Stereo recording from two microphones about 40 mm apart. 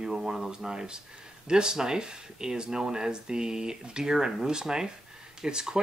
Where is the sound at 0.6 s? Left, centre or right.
Centre.